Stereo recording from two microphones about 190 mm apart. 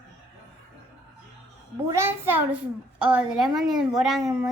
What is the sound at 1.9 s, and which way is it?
A child's voice, 10° right (ahead or behind).